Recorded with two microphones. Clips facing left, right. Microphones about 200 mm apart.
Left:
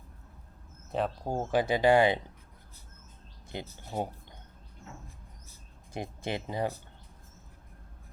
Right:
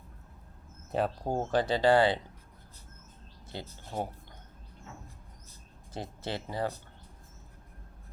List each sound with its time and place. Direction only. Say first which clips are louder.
0.9 s speech: right 1 dB; centre (ahead or behind)
1.5 s speech: left 1 dB; 10° left (ahead or behind)
3.5 s speech: left 2 dB; 20° left (ahead or behind)
5.9 s speech: left 2 dB; 15° left (ahead or behind)